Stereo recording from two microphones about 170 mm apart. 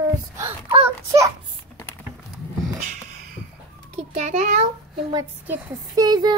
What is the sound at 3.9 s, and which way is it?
Speech, 40° right (ahead or behind).